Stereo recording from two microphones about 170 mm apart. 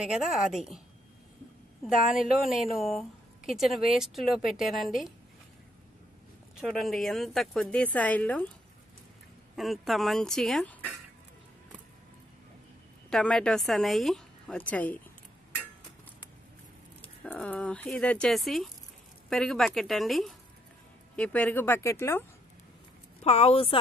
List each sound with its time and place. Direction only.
0.0 s a woman's voice: 5° right (ahead or behind)
1.9 s a woman's voice: centre (ahead or behind)
6.6 s a woman's voice: centre (ahead or behind)
9.6 s a woman's voice: centre (ahead or behind)
13.1 s a woman's voice: 5° left (ahead or behind)
17.2 s a woman's voice: 10° left (ahead or behind)
23.2 s a woman's voice: 40° left (ahead or behind)